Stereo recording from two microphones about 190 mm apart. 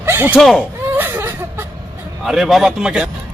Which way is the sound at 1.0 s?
10° right (ahead or behind).